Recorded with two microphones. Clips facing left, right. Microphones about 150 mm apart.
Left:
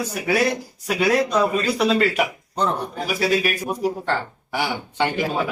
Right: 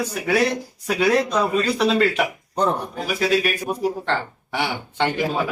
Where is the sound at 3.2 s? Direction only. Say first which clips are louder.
Right 1 dB; 5° left (ahead or behind).